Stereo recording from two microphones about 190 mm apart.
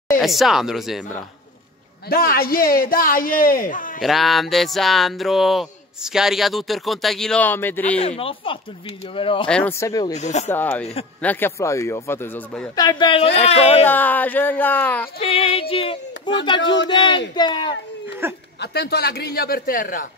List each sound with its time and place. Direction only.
0.2 s speech: centre (ahead or behind)
2.0 s a man's voice: 50° left (ahead or behind)
4.0 s speech: centre (ahead or behind)
8.0 s speech: 30° left (ahead or behind)
9.5 s speech: 10° left (ahead or behind)
10.1 s speech: 35° left (ahead or behind)
10.5 s speech: 10° left (ahead or behind)
12.7 s speech: 25° left (ahead or behind)
13.8 s speech: 10° left (ahead or behind)
15.1 s speech: 30° left (ahead or behind)
18.2 s speech: 10° right (ahead or behind)
18.6 s a man's voice: 60° left (ahead or behind)